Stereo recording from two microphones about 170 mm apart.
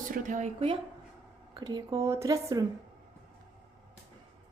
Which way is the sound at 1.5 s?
25° right (ahead or behind).